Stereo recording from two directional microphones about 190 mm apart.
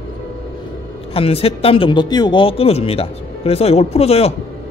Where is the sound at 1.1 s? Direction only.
30° left (ahead or behind).